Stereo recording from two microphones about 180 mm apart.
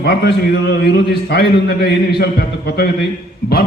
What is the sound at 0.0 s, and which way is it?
A man's voice, 70° left (ahead or behind).